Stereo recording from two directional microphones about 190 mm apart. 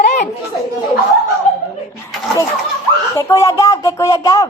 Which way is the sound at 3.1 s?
15° left (ahead or behind).